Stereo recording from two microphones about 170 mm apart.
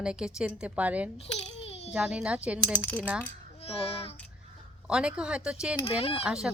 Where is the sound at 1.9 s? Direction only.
5° right (ahead or behind).